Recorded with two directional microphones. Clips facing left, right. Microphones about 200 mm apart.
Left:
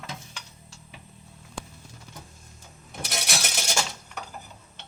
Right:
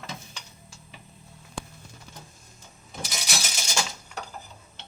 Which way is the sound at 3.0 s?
60° left (ahead or behind).